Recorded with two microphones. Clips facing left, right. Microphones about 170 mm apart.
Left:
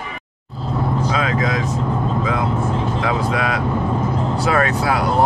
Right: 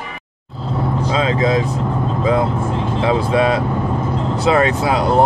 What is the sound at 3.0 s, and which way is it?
Speech, 25° right (ahead or behind).